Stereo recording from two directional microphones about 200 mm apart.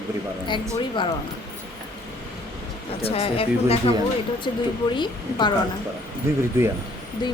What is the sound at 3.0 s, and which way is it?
A woman's voice, 30° left (ahead or behind).